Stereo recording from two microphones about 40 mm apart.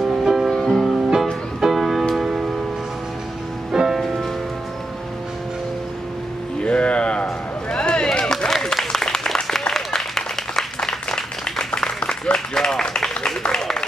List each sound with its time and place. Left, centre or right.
0.2 s music: centre
0.5 s music: centre
0.8 s music: centre
3.7 s music: centre
6.6 s a sound: left
8.7 s applause: centre
12.5 s a sound: centre